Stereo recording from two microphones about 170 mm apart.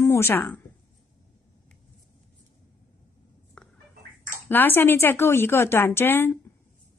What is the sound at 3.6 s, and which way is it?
Fowl, 5° left (ahead or behind).